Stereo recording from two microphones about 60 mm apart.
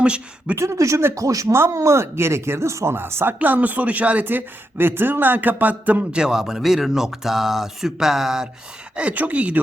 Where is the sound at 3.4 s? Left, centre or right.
Right.